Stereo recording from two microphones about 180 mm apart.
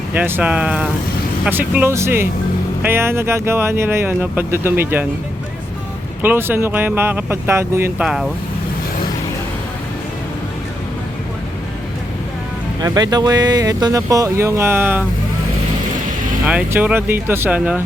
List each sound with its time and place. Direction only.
0.1 s speech: 10° right (ahead or behind)
6.2 s speech: 10° right (ahead or behind)
8.0 s speech: centre (ahead or behind)
12.8 s speech: 20° right (ahead or behind)
16.5 s speech: 10° right (ahead or behind)